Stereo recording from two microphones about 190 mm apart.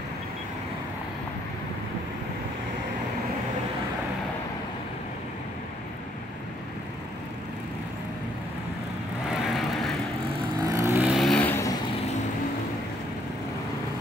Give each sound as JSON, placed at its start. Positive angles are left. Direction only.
{"t": 9.3, "sound": "vehicle", "side_deg": 0}
{"t": 10.6, "sound": "vehicle", "side_deg": -15}
{"t": 11.0, "sound": "vehicle", "side_deg": 0}